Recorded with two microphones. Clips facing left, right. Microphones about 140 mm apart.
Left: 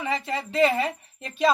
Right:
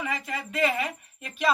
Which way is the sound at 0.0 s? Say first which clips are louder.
Left 4 dB; 30° left (ahead or behind).